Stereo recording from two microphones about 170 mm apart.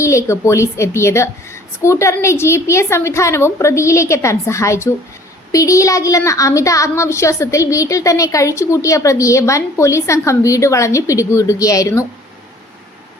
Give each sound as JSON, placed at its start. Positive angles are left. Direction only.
{"t": 0.0, "sound": "a woman's voice", "side_deg": 15}